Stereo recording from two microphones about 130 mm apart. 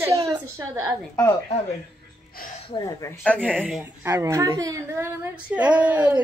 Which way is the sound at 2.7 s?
30° left (ahead or behind).